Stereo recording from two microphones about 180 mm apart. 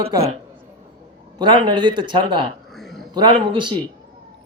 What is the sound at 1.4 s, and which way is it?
A man's voice, 25° right (ahead or behind).